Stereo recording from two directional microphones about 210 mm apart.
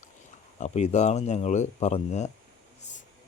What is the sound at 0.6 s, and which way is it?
Speech, 30° left (ahead or behind).